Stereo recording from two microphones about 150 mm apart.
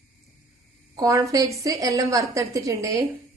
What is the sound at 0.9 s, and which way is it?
A woman's voice, 25° right (ahead or behind).